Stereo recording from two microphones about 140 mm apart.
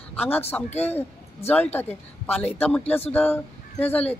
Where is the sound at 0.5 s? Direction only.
5° left (ahead or behind).